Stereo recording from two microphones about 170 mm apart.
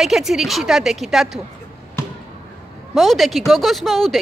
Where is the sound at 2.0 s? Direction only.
15° left (ahead or behind).